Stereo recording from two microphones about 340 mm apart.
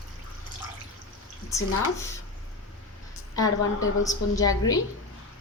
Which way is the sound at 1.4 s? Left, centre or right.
Centre.